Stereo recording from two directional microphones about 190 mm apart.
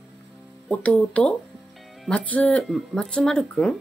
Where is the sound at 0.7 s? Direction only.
5° left (ahead or behind).